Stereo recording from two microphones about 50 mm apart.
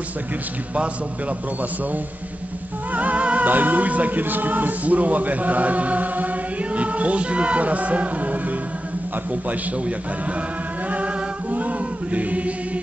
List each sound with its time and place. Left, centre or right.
2.9 s music: right
9.3 s a man's voice: right
11.5 s chant: right